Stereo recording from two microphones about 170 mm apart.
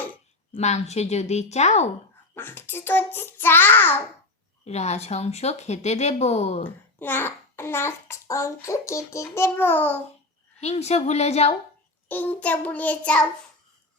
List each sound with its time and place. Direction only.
0.5 s speech: 40° left (ahead or behind)
2.3 s a child's voice: 15° left (ahead or behind)
4.6 s speech: 40° left (ahead or behind)
7.0 s a child's voice: 15° left (ahead or behind)
10.6 s speech: 40° left (ahead or behind)
12.0 s a child's voice: 10° left (ahead or behind)